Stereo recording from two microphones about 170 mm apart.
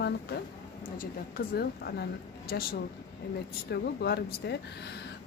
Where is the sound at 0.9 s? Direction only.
55° left (ahead or behind); by 2.7 s 75° left (ahead or behind).